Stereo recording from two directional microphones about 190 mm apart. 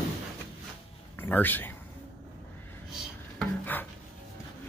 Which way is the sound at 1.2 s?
10° left (ahead or behind).